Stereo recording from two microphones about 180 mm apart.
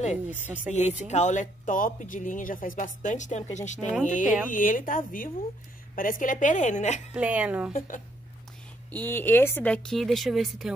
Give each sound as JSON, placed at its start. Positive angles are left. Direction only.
{"t": 0.7, "sound": "speech", "side_deg": 40}
{"t": 7.2, "sound": "speech", "side_deg": -5}
{"t": 8.9, "sound": "speech", "side_deg": 10}